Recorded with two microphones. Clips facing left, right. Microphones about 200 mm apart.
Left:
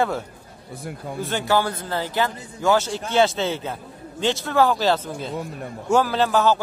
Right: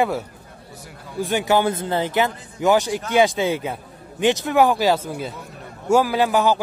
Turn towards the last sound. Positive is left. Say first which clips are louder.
# right 1 dB
turn(degrees=-15)  # may be behind; listen again after turning